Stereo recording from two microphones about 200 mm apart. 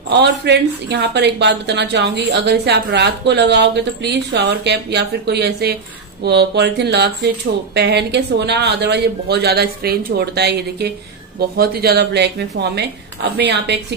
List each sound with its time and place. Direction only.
0.1 s speech: 60° right (ahead or behind)